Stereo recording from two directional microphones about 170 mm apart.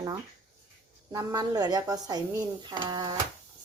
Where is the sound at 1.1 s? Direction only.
20° right (ahead or behind).